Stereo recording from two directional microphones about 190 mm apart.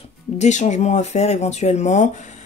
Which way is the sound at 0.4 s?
40° left (ahead or behind).